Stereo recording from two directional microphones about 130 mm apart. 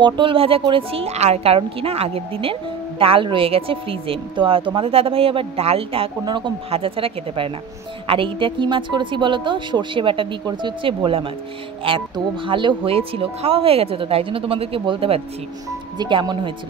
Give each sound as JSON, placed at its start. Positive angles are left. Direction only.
{"t": 0.0, "sound": "a woman's voice", "side_deg": -40}
{"t": 6.2, "sound": "a woman's voice", "side_deg": -35}
{"t": 16.0, "sound": "a woman's voice", "side_deg": -35}